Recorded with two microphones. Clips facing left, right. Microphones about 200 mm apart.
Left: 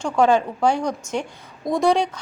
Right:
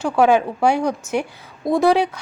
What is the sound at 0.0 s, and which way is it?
A woman's voice, 10° right (ahead or behind).